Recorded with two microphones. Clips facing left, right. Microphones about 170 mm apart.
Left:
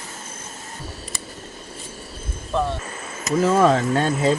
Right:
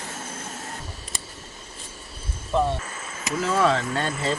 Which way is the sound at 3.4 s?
45° left (ahead or behind).